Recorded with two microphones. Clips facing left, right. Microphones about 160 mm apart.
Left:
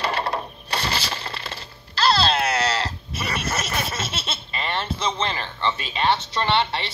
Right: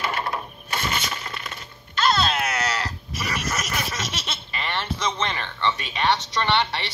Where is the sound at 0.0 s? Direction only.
30° left (ahead or behind).